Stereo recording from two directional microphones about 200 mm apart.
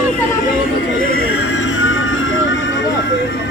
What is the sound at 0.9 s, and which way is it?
Music, 75° left (ahead or behind).